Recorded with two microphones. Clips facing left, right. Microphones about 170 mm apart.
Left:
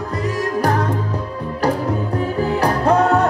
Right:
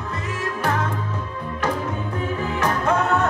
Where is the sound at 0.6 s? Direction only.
40° left (ahead or behind).